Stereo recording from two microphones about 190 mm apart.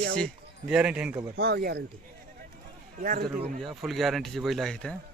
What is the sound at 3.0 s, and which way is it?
Speech, 45° right (ahead or behind).